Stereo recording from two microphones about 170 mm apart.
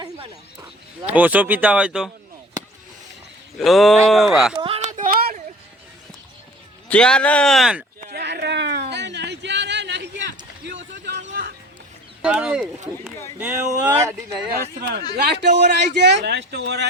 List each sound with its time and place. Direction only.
1.0 s speech: 10° right (ahead or behind)
3.6 s a man's voice: centre (ahead or behind)
4.5 s a sound: 35° right (ahead or behind); by 5.4 s 50° right (ahead or behind)
6.8 s a man's voice: 5° left (ahead or behind)
8.0 s a sound: 70° right (ahead or behind)
12.2 s speech: 5° right (ahead or behind)
15.3 s speech: 80° right